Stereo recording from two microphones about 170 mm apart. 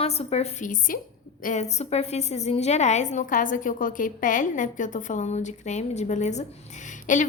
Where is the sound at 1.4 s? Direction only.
40° left (ahead or behind).